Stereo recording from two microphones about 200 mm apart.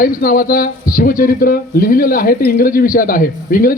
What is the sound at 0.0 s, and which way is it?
A man's voice, 45° left (ahead or behind).